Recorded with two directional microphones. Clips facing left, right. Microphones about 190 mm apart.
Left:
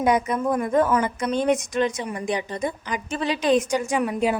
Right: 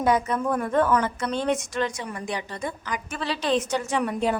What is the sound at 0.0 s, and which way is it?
A woman's voice, 15° left (ahead or behind).